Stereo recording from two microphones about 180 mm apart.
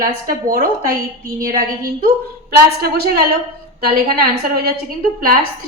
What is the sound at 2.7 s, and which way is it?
A woman's voice, 60° right (ahead or behind).